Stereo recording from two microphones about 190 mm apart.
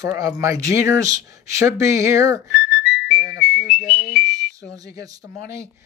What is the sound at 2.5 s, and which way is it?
Music, centre (ahead or behind).